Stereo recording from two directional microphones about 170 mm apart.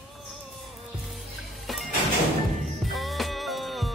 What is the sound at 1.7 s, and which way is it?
Music, centre (ahead or behind).